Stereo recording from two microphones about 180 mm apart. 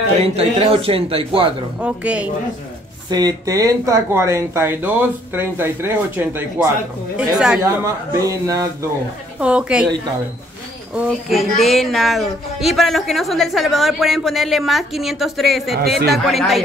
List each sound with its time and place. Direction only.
0.4 s a man's voice: 35° right (ahead or behind)
1.8 s speech: 5° right (ahead or behind)
3.1 s speech: 20° right (ahead or behind); by 7.6 s 5° right (ahead or behind)
7.8 s speech: 15° right (ahead or behind)
9.4 s speech: 5° right (ahead or behind)
11.0 s speech: centre (ahead or behind)